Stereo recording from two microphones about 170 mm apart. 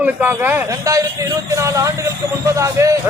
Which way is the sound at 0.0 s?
10° right (ahead or behind).